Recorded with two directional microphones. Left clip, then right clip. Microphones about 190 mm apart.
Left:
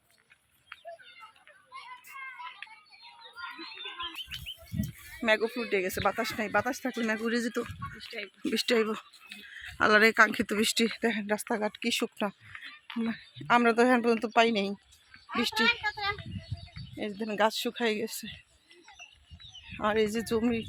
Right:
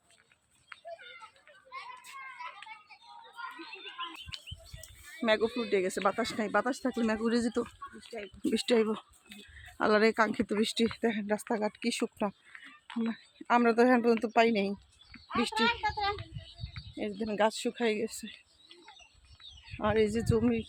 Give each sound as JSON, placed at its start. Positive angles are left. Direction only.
{"t": 2.6, "sound": "a sound", "side_deg": 35}
{"t": 4.3, "sound": "bird", "side_deg": 0}
{"t": 5.2, "sound": "speech", "side_deg": 0}
{"t": 16.7, "sound": "speech", "side_deg": 5}
{"t": 19.4, "sound": "speech", "side_deg": 0}